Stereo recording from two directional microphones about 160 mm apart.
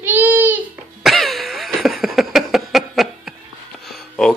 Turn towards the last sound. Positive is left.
turn(degrees=5)  # may be behind; listen again after turning